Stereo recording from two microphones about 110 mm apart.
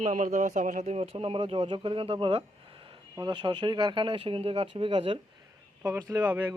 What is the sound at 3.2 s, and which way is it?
Speech, 45° right (ahead or behind).